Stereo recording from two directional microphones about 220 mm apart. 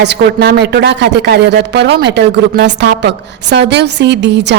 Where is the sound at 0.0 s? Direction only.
50° right (ahead or behind).